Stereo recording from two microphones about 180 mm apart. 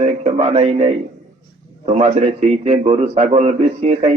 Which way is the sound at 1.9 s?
35° right (ahead or behind).